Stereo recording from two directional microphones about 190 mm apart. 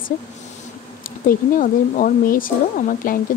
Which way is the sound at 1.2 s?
45° left (ahead or behind).